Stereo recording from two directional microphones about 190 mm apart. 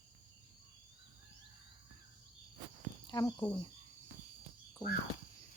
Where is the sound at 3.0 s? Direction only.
20° left (ahead or behind).